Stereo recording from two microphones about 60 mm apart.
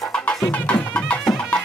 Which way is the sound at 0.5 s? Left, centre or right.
Left.